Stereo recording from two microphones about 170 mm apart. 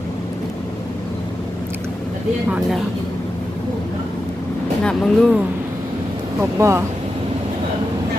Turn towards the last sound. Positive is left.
turn(degrees=-15)  # may be behind; listen again after turning